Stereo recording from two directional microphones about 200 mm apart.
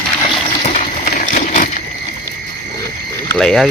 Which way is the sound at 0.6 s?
35° left (ahead or behind).